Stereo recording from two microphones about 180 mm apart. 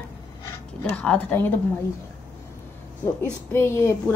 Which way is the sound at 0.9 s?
10° left (ahead or behind).